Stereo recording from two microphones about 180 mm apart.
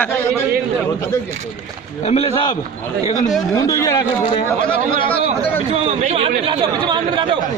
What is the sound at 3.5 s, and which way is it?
Speech, 20° left (ahead or behind).